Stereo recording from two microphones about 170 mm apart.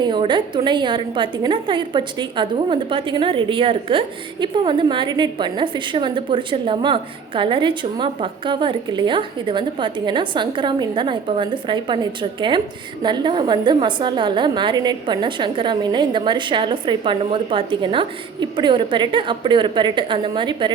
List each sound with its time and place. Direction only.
0.0 s a woman's voice: 25° right (ahead or behind)